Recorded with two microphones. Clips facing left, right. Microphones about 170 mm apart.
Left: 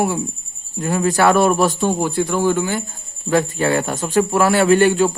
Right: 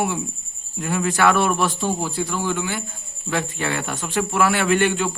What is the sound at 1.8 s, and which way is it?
Speech, 60° left (ahead or behind).